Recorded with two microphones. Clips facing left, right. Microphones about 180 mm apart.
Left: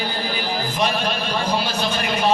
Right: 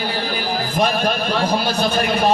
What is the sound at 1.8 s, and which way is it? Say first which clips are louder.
Speech: right 4 dB; 45° right (ahead or behind).